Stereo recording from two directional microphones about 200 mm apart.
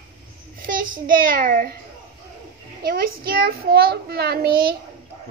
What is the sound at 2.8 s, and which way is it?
A child's voice, 50° right (ahead or behind).